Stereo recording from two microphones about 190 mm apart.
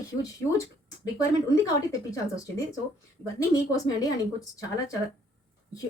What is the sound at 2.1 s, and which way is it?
Speech, 15° left (ahead or behind).